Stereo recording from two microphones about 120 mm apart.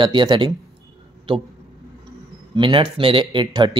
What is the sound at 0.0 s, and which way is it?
Speech, 40° right (ahead or behind).